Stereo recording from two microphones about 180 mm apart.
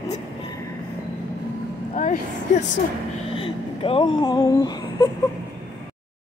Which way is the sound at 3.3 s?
30° left (ahead or behind).